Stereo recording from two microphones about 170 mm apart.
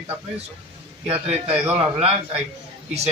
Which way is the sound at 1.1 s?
35° right (ahead or behind).